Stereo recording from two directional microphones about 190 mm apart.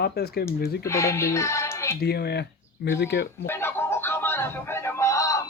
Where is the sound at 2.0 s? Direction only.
55° left (ahead or behind).